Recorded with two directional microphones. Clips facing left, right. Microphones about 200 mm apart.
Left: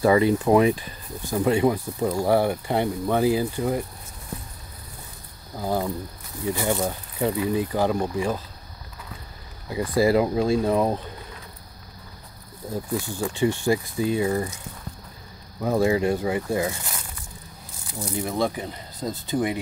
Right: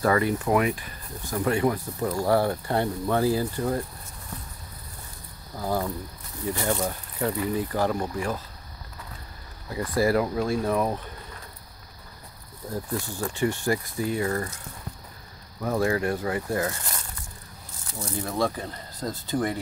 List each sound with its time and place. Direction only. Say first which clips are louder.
0.0 s speech: left 5 dB; 20° left (ahead or behind)
5.6 s speech: left 2 dB; 20° left (ahead or behind)
9.7 s speech: left 3 dB; 20° left (ahead or behind)
13.2 s speech: left 3 dB; 25° left (ahead or behind)
15.6 s speech: left 4 dB; 20° left (ahead or behind)